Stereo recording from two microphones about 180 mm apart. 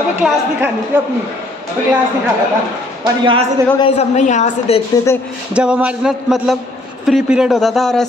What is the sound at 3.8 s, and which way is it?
A woman's voice, 40° left (ahead or behind).